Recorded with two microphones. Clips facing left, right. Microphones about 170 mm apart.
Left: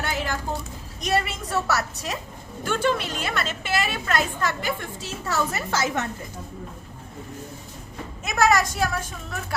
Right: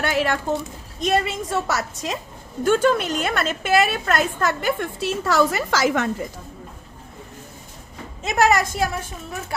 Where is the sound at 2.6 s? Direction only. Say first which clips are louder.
Right 6 dB; 45° right (ahead or behind); by 6.1 s 90° right.